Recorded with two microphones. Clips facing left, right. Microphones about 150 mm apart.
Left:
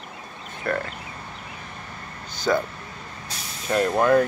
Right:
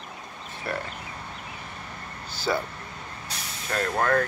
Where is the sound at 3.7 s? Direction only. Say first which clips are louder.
Left 6 dB; 15° left (ahead or behind).